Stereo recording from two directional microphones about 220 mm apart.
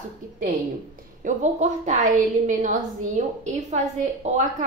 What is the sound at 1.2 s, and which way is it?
A woman's voice, 35° right (ahead or behind).